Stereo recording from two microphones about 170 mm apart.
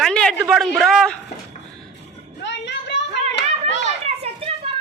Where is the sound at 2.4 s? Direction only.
90° left.